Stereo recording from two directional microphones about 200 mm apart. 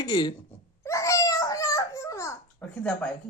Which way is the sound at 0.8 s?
15° left (ahead or behind).